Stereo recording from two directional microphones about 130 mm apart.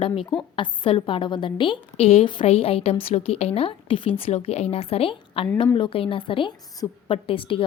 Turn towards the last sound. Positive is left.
turn(degrees=45)  # may be behind; listen again after turning